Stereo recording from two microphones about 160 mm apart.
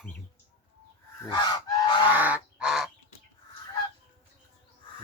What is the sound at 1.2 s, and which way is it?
Goose, 25° left (ahead or behind).